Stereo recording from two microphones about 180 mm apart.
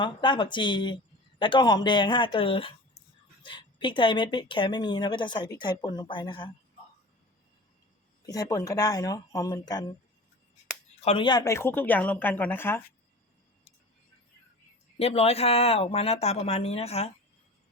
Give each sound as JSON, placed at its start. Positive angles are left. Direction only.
{"t": 0.0, "sound": "speech", "side_deg": 25}
{"t": 8.3, "sound": "speech", "side_deg": 20}
{"t": 11.0, "sound": "speech", "side_deg": 30}
{"t": 14.9, "sound": "speech", "side_deg": 35}